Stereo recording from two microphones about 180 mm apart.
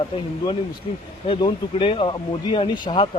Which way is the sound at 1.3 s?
30° left (ahead or behind).